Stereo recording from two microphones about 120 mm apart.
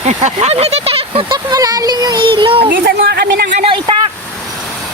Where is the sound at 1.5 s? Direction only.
30° right (ahead or behind); by 2.6 s 45° right (ahead or behind).